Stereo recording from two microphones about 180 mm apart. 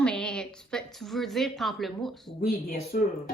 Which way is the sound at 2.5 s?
55° left (ahead or behind).